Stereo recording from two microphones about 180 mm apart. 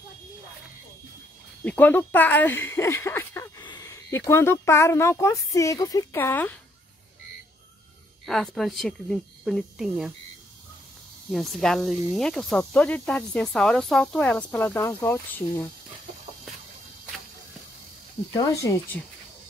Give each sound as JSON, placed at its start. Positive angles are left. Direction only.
{"t": 1.6, "sound": "speech", "side_deg": 10}
{"t": 8.3, "sound": "speech", "side_deg": 0}
{"t": 11.3, "sound": "speech", "side_deg": 0}
{"t": 18.4, "sound": "speech", "side_deg": 15}